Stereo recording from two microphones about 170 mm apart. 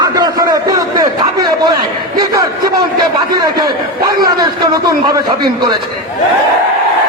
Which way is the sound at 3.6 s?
25° right (ahead or behind).